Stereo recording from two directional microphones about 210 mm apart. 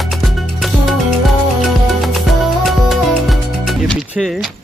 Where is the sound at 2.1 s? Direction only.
Centre (ahead or behind).